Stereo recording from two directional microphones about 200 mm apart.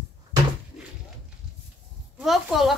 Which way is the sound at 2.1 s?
Centre (ahead or behind).